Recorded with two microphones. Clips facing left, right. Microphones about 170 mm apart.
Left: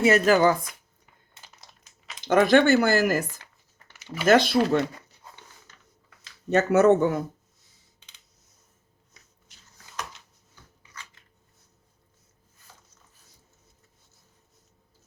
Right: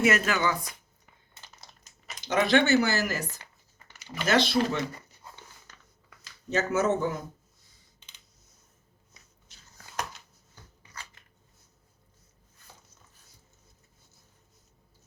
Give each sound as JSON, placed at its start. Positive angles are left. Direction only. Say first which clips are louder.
{"t": 0.0, "sound": "speech", "louder": "left 7 dB", "side_deg": 35}
{"t": 2.2, "sound": "speech", "louder": "left 5 dB", "side_deg": 50}
{"t": 4.3, "sound": "speech", "louder": "left 6 dB", "side_deg": 50}
{"t": 6.5, "sound": "speech", "louder": "left 8 dB", "side_deg": 65}
{"t": 10.5, "sound": "a sound", "louder": "right 1 dB", "side_deg": -40}